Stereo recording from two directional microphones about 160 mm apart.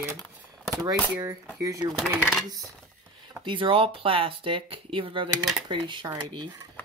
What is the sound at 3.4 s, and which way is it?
Speech, 30° right (ahead or behind).